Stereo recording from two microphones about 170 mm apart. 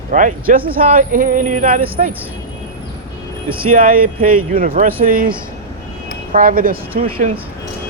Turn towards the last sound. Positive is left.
turn(degrees=-55)  # may be behind; listen again after turning